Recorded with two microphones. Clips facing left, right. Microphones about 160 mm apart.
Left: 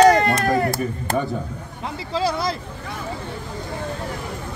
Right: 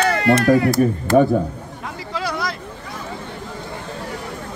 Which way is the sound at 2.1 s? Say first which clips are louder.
Left 3 dB; 30° left (ahead or behind).